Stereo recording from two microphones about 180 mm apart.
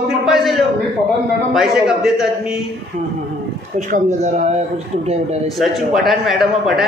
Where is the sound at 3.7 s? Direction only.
45° right (ahead or behind).